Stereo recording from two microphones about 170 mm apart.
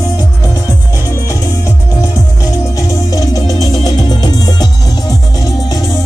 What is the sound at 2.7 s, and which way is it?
Music, 20° left (ahead or behind).